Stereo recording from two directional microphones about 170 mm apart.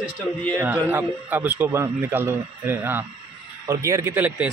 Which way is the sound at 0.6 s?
10° right (ahead or behind).